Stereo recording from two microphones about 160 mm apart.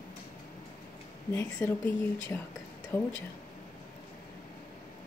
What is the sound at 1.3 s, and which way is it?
A woman's voice, 15° left (ahead or behind).